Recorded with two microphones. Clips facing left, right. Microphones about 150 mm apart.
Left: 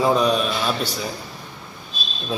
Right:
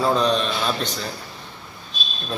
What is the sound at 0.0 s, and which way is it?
A man's voice, 10° left (ahead or behind).